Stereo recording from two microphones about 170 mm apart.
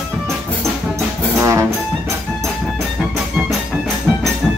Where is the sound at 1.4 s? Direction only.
15° right (ahead or behind).